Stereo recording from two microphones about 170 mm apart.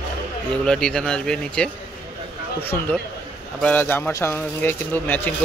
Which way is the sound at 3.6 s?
10° left (ahead or behind).